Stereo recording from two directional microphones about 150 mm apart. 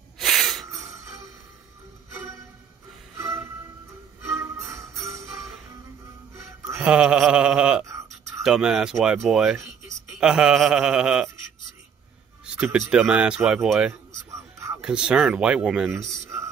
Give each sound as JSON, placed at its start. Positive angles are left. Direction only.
{"t": 0.2, "sound": "snort", "side_deg": 0}
{"t": 0.7, "sound": "music", "side_deg": -20}
{"t": 4.3, "sound": "music", "side_deg": -20}
{"t": 6.3, "sound": "music", "side_deg": -20}
{"t": 6.9, "sound": "a sound", "side_deg": -5}
{"t": 7.8, "sound": "a sound", "side_deg": -20}
{"t": 8.4, "sound": "speech", "side_deg": -5}
{"t": 12.5, "sound": "speech", "side_deg": 0}